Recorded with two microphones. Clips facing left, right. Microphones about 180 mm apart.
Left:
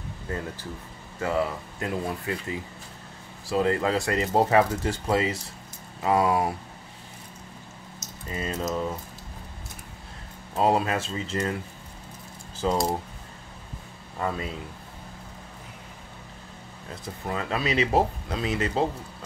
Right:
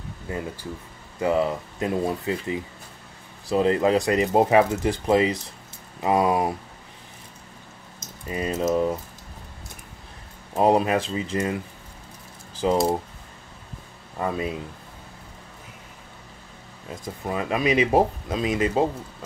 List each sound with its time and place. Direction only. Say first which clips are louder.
1.2 s speech: right 4 dB; 20° right (ahead or behind)
8.3 s speech: right 6 dB; 15° right (ahead or behind)
10.5 s speech: right 4 dB; 15° right (ahead or behind)
12.6 s speech: right 4 dB; 15° right (ahead or behind)
14.2 s speech: right 3 dB; 20° right (ahead or behind)
17.3 s speech: right 4 dB; 15° right (ahead or behind)